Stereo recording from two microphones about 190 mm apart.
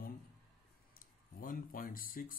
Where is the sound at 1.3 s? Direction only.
45° left (ahead or behind).